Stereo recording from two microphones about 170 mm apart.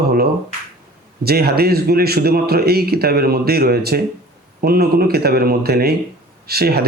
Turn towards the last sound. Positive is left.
turn(degrees=-65)  # may be behind; listen again after turning